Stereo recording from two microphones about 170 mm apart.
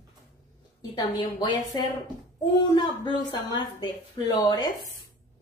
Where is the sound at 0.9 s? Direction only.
20° left (ahead or behind).